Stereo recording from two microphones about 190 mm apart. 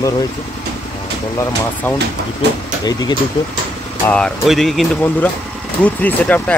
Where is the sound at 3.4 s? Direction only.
25° left (ahead or behind).